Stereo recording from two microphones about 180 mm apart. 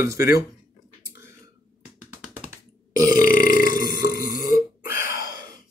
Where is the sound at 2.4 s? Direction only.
50° left (ahead or behind).